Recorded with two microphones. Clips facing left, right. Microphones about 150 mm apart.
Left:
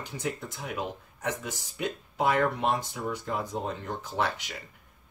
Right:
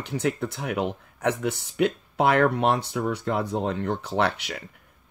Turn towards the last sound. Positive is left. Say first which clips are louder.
# right 5 dB
turn(degrees=-70)  # may be behind; listen again after turning